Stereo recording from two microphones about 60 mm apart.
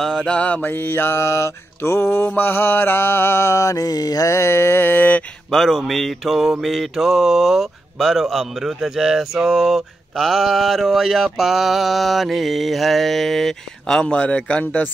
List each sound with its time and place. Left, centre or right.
0.0 s mantra: centre
0.7 s mantra: left
3.7 s mantra: left
4.3 s a sound: left
5.5 s speech: centre; by 14.9 s left